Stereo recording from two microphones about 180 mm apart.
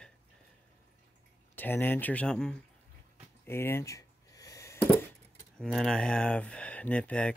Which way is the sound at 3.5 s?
15° left (ahead or behind).